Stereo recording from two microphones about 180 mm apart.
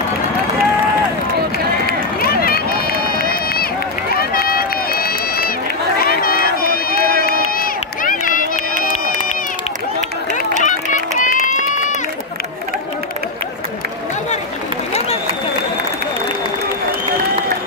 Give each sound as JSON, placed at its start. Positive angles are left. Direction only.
{"t": 1.9, "sound": "run", "side_deg": 55}
{"t": 10.6, "sound": "run", "side_deg": 45}